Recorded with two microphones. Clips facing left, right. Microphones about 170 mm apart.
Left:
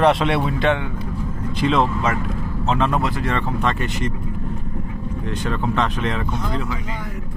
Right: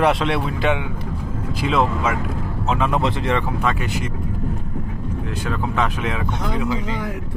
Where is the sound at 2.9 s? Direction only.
20° right (ahead or behind).